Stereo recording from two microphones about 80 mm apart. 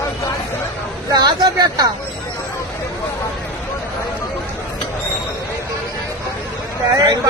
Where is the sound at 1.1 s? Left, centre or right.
Right.